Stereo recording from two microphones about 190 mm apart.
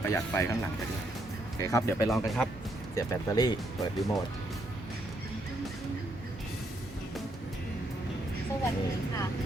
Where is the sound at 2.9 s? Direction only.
20° left (ahead or behind).